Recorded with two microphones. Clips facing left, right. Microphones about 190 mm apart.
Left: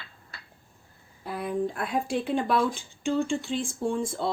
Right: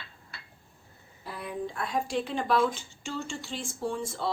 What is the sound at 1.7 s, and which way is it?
Speech, 60° left (ahead or behind).